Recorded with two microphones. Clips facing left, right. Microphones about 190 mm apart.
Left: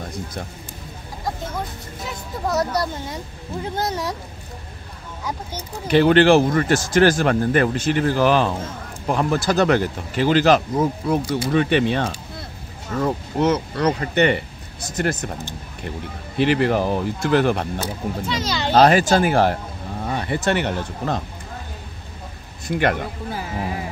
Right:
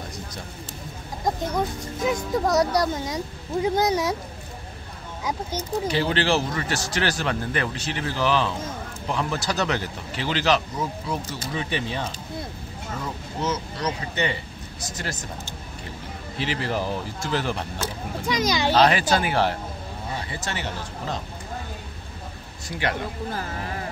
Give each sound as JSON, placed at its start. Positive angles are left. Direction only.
{"t": 2.6, "sound": "speech", "side_deg": -15}
{"t": 5.9, "sound": "speech", "side_deg": 60}
{"t": 16.3, "sound": "speech", "side_deg": 60}
{"t": 18.2, "sound": "speech", "side_deg": -15}
{"t": 18.7, "sound": "speech", "side_deg": 45}
{"t": 20.1, "sound": "speech", "side_deg": 65}
{"t": 22.7, "sound": "speech", "side_deg": 55}
{"t": 23.3, "sound": "speech", "side_deg": 10}